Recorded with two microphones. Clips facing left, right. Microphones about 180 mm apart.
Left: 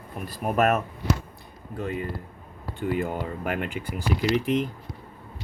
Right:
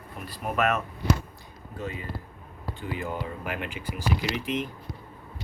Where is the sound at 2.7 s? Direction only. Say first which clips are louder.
Left 6 dB; 50° left (ahead or behind).